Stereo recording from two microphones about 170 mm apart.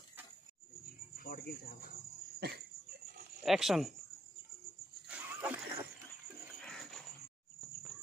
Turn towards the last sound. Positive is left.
turn(degrees=0)  # may be behind; listen again after turning